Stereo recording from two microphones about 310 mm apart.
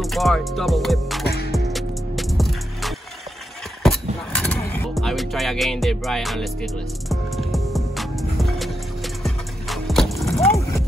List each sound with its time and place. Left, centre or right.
0.0 s music: centre
1.2 s music: left
1.5 s music: centre